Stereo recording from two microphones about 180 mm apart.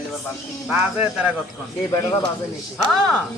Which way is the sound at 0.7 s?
5° right (ahead or behind).